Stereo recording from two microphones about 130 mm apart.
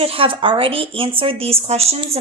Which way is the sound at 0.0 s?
45° right (ahead or behind).